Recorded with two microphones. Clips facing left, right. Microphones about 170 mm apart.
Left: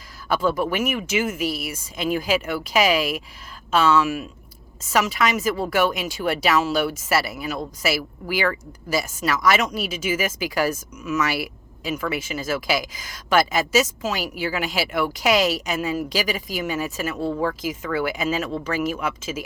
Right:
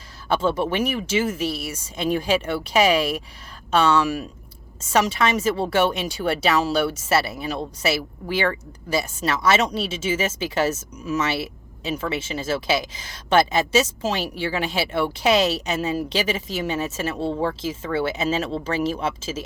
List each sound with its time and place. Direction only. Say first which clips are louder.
0.3 s speech: even; 30° right (ahead or behind)